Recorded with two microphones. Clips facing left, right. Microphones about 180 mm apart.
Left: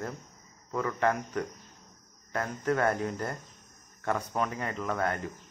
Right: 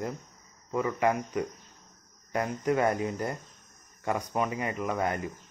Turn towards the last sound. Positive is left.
turn(degrees=-10)  # may be behind; listen again after turning